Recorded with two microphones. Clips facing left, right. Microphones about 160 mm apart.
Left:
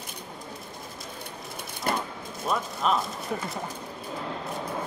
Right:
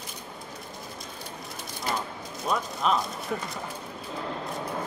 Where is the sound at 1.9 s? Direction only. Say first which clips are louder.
Left 2 dB; 55° left (ahead or behind).